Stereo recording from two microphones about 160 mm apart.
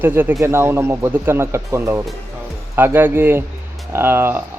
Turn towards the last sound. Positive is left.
turn(degrees=-15)  # may be behind; listen again after turning